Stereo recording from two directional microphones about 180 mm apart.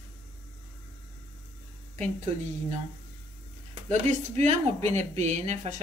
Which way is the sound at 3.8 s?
40° right (ahead or behind).